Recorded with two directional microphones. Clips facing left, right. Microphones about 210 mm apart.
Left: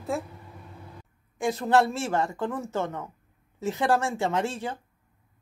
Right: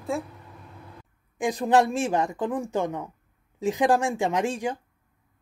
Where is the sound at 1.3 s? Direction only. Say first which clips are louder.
Right 1 dB; 15° right (ahead or behind).